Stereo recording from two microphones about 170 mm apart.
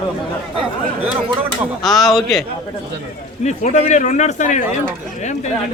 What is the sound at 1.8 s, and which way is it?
Speech, centre (ahead or behind).